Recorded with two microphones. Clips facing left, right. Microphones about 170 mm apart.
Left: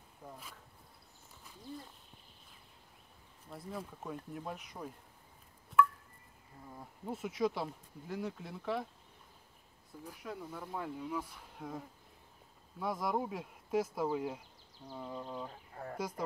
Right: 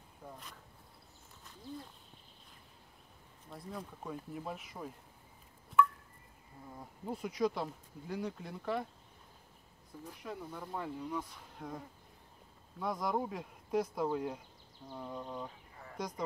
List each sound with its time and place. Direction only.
0.3 s insect: 5° left (ahead or behind)
1.4 s a sound: 10° left (ahead or behind)
3.4 s speech: centre (ahead or behind)
6.8 s speech: 5° left (ahead or behind)
10.0 s speech: centre (ahead or behind)
15.7 s a sound: 50° left (ahead or behind)
16.0 s speech: 5° left (ahead or behind)